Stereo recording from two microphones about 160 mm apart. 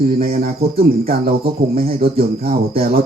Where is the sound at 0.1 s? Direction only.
70° right (ahead or behind).